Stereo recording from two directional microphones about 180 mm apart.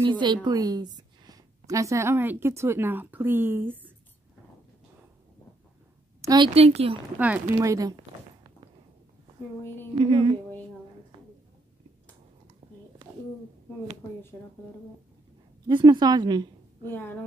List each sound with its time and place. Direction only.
0.0 s a woman's voice: 25° right (ahead or behind)
6.2 s a woman's voice: 20° right (ahead or behind)
6.5 s speech: 35° right (ahead or behind)
7.2 s a woman's voice: 10° right (ahead or behind)
9.9 s speech: 30° right (ahead or behind)
14.3 s speech: 5° left (ahead or behind)
15.6 s a woman's voice: 25° right (ahead or behind)